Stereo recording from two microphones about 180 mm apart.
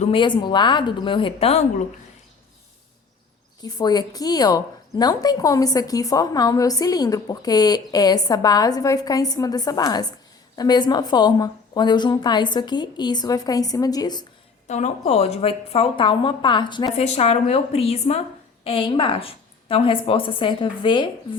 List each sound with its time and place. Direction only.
0.0 s a woman's voice: 30° left (ahead or behind)
3.6 s a woman's voice: 20° left (ahead or behind)
14.7 s a woman's voice: 40° left (ahead or behind)
17.0 s a woman's voice: 35° left (ahead or behind)